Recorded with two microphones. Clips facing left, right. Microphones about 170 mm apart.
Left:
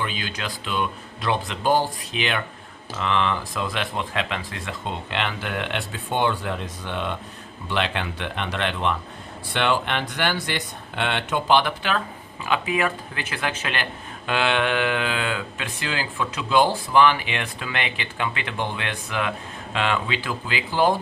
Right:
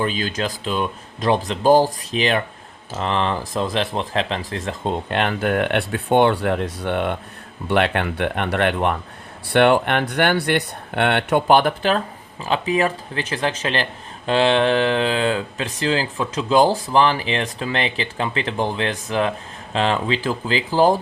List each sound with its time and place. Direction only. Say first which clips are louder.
0.0 s speech: right 7 dB; 40° right (ahead or behind)